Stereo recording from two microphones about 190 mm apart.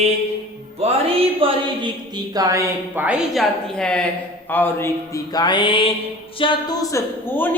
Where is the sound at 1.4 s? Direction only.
25° right (ahead or behind); by 4.0 s 5° left (ahead or behind).